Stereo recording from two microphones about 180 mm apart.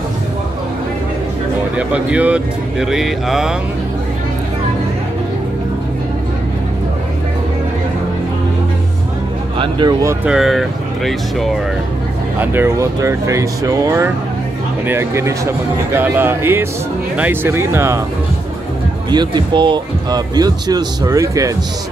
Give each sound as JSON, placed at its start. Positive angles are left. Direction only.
{"t": 1.8, "sound": "speech", "side_deg": -5}
{"t": 9.6, "sound": "speech", "side_deg": -25}
{"t": 10.2, "sound": "speech", "side_deg": -5}
{"t": 12.4, "sound": "speech", "side_deg": -15}
{"t": 19.0, "sound": "speech", "side_deg": -25}